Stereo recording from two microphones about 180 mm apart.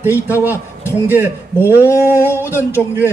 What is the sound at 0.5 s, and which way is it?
Speech, 15° left (ahead or behind).